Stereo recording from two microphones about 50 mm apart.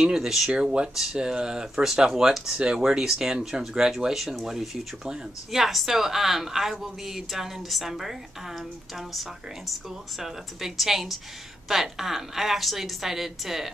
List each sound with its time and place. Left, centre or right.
0.0 s speech: centre
2.5 s speech: right
2.8 s speech: centre